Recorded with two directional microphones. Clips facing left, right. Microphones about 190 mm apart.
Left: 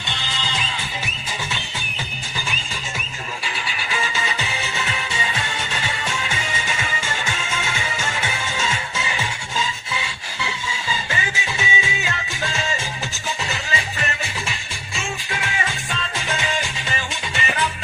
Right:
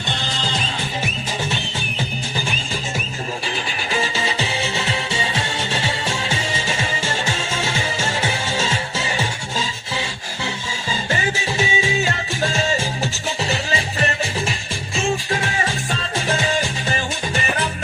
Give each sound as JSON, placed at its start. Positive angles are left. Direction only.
{"t": 0.3, "sound": "music", "side_deg": -40}
{"t": 3.4, "sound": "music", "side_deg": -40}